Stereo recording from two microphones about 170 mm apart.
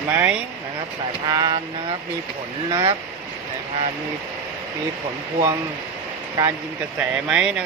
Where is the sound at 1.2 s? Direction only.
25° right (ahead or behind).